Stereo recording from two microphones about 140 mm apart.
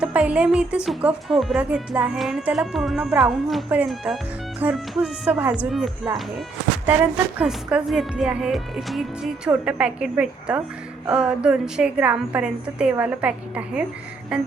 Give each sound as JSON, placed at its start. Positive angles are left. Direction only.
{"t": 0.0, "sound": "a woman's voice", "side_deg": -10}
{"t": 6.8, "sound": "a woman's voice", "side_deg": -10}